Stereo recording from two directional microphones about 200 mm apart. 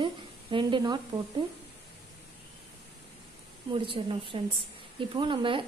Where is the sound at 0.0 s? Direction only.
25° right (ahead or behind).